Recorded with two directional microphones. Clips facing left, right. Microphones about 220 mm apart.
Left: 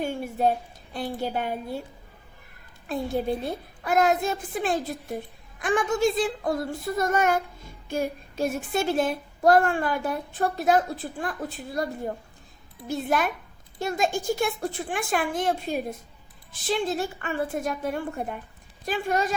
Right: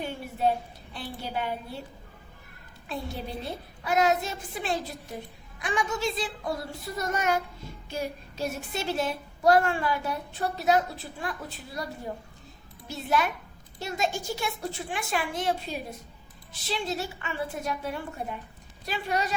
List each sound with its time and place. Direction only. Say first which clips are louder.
0.0 s a woman's voice: left 3 dB; 45° left (ahead or behind)
2.9 s a woman's voice: left 8 dB; 50° left (ahead or behind)
12.9 s a woman's voice: left 2 dB; 50° left (ahead or behind)